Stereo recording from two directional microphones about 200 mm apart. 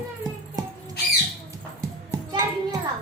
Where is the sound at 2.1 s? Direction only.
15° right (ahead or behind).